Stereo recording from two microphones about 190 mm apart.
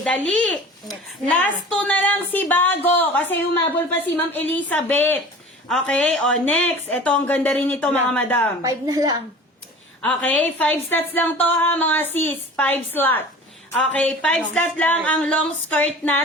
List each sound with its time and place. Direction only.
0.0 s a woman's voice: 5° left (ahead or behind)
8.6 s a woman's voice: 20° right (ahead or behind)
10.0 s a woman's voice: 5° left (ahead or behind)